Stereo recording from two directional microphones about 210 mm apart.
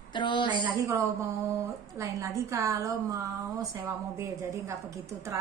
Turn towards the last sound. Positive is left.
turn(degrees=-15)  # may be behind; listen again after turning